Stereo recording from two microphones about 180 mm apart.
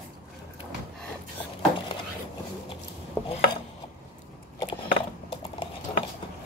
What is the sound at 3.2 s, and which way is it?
Dishes, 5° left (ahead or behind).